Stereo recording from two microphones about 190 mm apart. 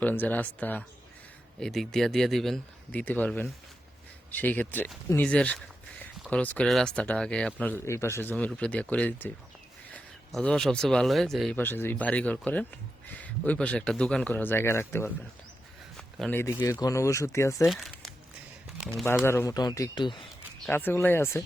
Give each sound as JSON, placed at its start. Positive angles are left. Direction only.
{"t": 0.0, "sound": "speech", "side_deg": 10}
{"t": 16.0, "sound": "a sound", "side_deg": 5}
{"t": 16.6, "sound": "speech", "side_deg": 20}
{"t": 17.7, "sound": "crumpling", "side_deg": 0}
{"t": 18.8, "sound": "speech", "side_deg": 0}
{"t": 19.2, "sound": "speech", "side_deg": 15}
{"t": 20.7, "sound": "speech", "side_deg": 10}